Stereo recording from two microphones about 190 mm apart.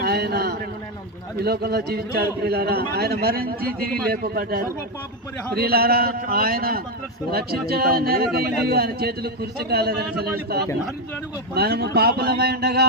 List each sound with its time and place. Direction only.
0.0 s a sound: 55° right (ahead or behind)
1.4 s a man's voice: 55° right (ahead or behind)
11.5 s a man's voice: 60° right (ahead or behind)